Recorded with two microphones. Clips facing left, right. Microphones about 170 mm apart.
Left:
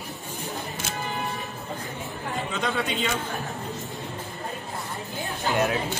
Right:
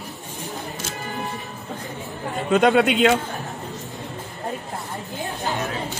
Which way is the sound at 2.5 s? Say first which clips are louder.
Right 14 dB; 70° right (ahead or behind).